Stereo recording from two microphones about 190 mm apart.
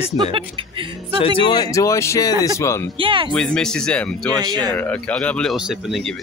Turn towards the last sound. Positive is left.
turn(degrees=0)  # may be behind; listen again after turning